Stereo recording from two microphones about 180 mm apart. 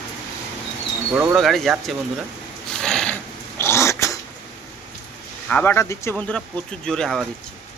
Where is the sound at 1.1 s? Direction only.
5° right (ahead or behind).